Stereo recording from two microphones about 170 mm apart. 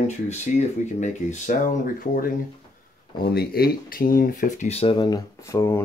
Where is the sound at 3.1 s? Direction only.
65° left (ahead or behind).